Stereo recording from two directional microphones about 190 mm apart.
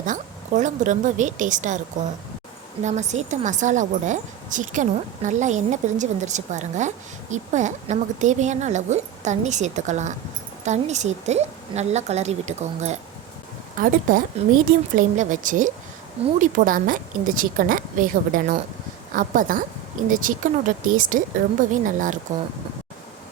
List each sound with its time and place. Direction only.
0.0 s a woman's voice: 40° right (ahead or behind)
2.8 s a woman's voice: 40° right (ahead or behind)
14.9 s a woman's voice: 40° right (ahead or behind)